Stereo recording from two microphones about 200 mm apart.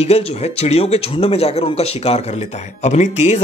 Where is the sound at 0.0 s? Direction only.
30° left (ahead or behind).